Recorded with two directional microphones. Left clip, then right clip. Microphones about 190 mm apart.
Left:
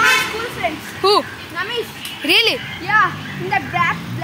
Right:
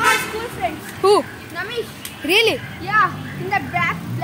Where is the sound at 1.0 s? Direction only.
20° right (ahead or behind).